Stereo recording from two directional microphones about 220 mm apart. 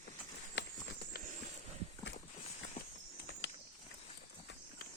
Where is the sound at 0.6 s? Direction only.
55° left (ahead or behind).